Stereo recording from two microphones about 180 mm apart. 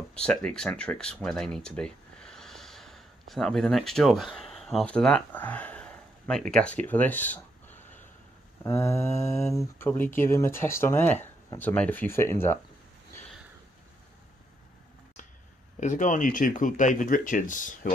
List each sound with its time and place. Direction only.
0.1 s speech: 5° left (ahead or behind)
15.8 s speech: 45° left (ahead or behind)